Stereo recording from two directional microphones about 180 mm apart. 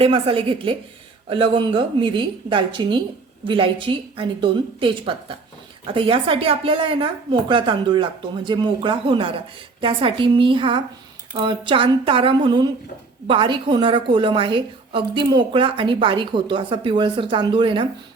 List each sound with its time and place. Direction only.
0.0 s a woman's voice: 30° right (ahead or behind)